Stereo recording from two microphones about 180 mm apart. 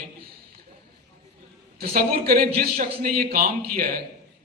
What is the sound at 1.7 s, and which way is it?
A man's voice, 55° right (ahead or behind).